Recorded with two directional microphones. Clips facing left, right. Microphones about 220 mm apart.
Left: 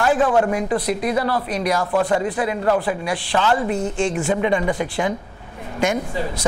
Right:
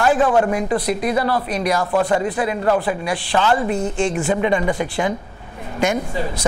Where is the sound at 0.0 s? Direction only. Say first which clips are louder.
Right 1 dB; 25° right (ahead or behind).